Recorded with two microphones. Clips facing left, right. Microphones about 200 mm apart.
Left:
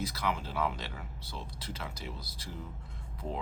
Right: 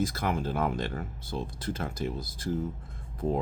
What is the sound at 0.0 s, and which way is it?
Speech, 50° right (ahead or behind).